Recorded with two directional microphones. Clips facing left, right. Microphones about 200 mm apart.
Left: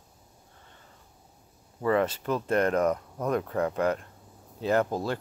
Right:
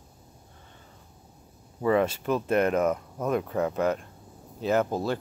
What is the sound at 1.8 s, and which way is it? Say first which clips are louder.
Speech: right 2 dB; 15° right (ahead or behind).